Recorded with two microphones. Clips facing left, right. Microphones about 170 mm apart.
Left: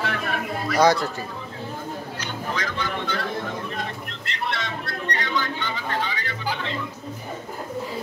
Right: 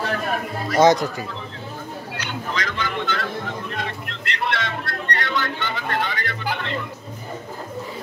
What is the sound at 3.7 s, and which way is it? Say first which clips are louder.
Music: right 2 dB; 75° right (ahead or behind).